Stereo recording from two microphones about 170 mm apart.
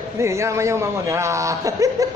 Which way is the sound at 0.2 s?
15° right (ahead or behind).